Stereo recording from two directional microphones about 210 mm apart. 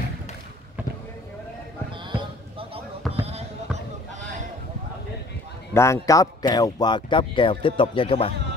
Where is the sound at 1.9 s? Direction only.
25° right (ahead or behind).